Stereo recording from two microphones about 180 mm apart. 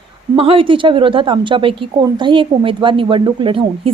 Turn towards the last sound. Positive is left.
turn(degrees=-30)  # may be behind; listen again after turning